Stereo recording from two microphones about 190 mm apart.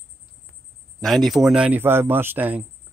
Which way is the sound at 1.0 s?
Centre (ahead or behind).